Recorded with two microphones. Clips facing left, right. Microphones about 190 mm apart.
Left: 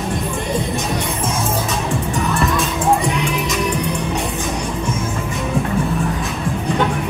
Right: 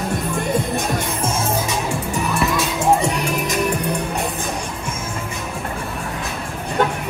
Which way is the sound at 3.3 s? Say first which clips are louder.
Even; 50° right (ahead or behind).